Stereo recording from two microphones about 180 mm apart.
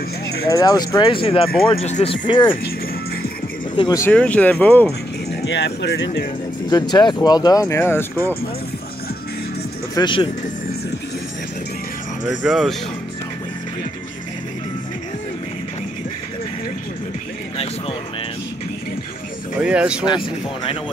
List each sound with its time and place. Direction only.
0.5 s speech: 20° left (ahead or behind)
3.7 s speech: 25° left (ahead or behind)
4.0 s speech: 5° left (ahead or behind)
5.3 s speech: 75° left (ahead or behind)
6.7 s speech: 25° left (ahead or behind)
9.9 s speech: 25° left (ahead or behind)
12.3 s speech: centre (ahead or behind)
19.6 s speech: 5° right (ahead or behind)
20.1 s speech: 30° left (ahead or behind)